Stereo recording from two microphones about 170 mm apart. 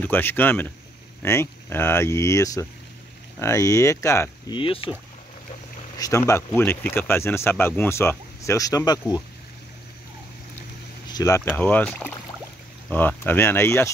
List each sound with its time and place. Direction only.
0.0 s speech: 10° left (ahead or behind)
4.6 s speech: 30° left (ahead or behind)
5.9 s speech: 20° left (ahead or behind)
11.1 s speech: 20° left (ahead or behind)
11.5 s speech: 10° left (ahead or behind)